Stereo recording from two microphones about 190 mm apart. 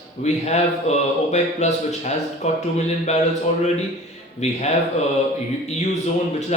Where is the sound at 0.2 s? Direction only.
35° left (ahead or behind).